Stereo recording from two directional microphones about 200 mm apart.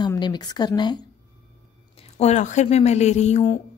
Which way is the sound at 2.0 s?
35° left (ahead or behind).